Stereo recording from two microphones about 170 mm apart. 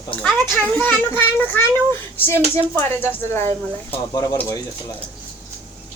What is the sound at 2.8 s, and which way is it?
A child's voice, 15° left (ahead or behind).